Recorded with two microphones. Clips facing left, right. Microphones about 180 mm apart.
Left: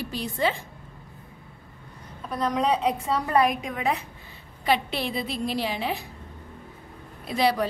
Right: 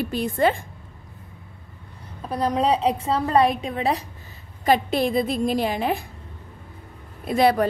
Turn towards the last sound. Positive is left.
turn(degrees=-50)  # may be behind; listen again after turning